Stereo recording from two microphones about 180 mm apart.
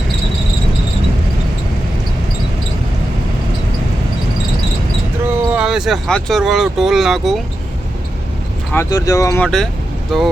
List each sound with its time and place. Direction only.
5.3 s speech: 5° right (ahead or behind)
8.7 s speech: 15° left (ahead or behind)
9.4 s speech: 5° left (ahead or behind)